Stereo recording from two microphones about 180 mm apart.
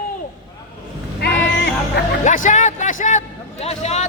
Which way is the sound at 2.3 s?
45° left (ahead or behind).